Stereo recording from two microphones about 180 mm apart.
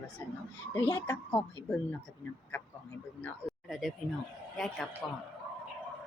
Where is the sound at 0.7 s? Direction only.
15° left (ahead or behind).